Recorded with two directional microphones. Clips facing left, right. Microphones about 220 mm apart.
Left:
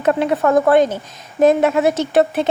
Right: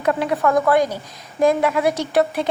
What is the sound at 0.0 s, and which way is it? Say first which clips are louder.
Speech: left 3 dB; 25° left (ahead or behind).